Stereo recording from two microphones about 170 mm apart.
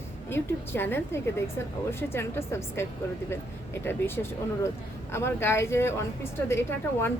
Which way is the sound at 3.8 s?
15° left (ahead or behind).